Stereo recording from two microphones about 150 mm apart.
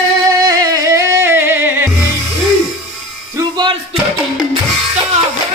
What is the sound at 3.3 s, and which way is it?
Music, 30° right (ahead or behind).